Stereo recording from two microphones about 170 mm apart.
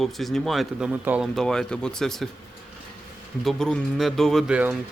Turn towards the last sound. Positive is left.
turn(degrees=-5)  # may be behind; listen again after turning